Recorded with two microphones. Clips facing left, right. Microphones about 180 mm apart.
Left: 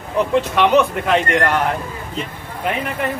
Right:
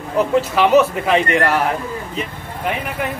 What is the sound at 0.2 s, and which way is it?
A man's voice, 5° right (ahead or behind).